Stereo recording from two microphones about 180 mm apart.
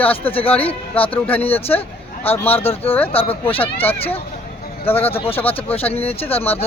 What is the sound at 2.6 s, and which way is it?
Speech, 30° left (ahead or behind).